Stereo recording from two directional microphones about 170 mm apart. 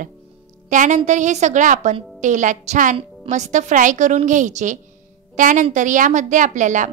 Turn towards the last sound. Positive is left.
turn(degrees=-45)  # may be behind; listen again after turning